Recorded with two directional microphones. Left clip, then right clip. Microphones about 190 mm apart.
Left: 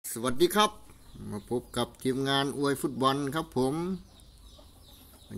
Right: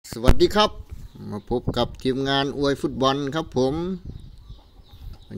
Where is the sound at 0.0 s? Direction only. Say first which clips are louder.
Right 7 dB; 25° right (ahead or behind).